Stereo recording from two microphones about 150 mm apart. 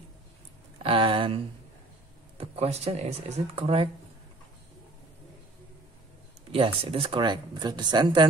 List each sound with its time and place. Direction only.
0.8 s a sound: 35° right (ahead or behind)
2.3 s speech: 40° right (ahead or behind)
6.5 s speech: 40° right (ahead or behind)